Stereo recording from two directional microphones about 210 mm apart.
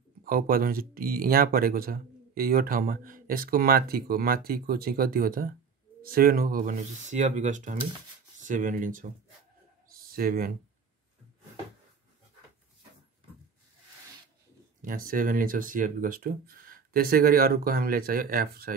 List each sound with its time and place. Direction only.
0.2 s speech: 45° right (ahead or behind)
9.9 s a sound: 45° right (ahead or behind)
14.8 s speech: 40° right (ahead or behind)